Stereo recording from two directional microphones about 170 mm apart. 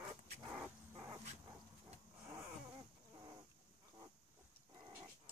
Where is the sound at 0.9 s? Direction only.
20° right (ahead or behind).